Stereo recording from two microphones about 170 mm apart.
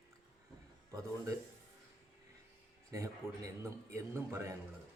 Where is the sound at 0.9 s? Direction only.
15° right (ahead or behind).